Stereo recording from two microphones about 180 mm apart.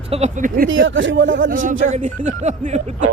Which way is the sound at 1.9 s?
40° right (ahead or behind).